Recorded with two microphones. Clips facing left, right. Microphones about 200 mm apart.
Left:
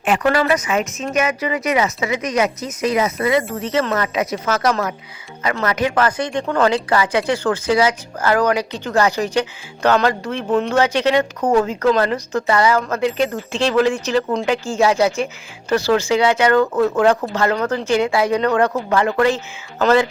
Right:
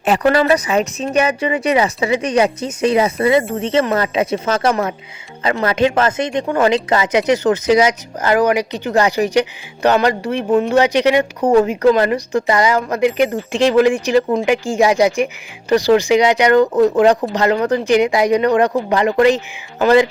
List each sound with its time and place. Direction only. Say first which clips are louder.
0.0 s speech: right 3 dB; 35° right (ahead or behind); by 19.4 s 15° right (ahead or behind)